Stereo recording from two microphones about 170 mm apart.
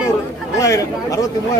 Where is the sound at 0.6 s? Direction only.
20° left (ahead or behind).